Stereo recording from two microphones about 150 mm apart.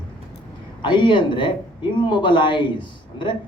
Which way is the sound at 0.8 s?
30° left (ahead or behind).